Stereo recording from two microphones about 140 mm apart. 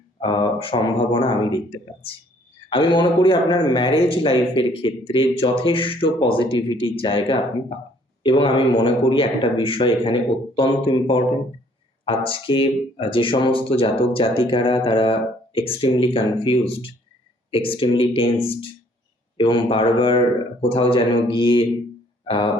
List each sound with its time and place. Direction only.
0.2 s speech: 35° left (ahead or behind)